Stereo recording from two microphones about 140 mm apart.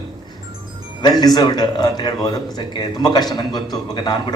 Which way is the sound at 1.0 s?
30° left (ahead or behind).